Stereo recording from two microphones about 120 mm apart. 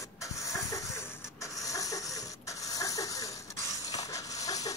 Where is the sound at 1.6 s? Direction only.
30° left (ahead or behind).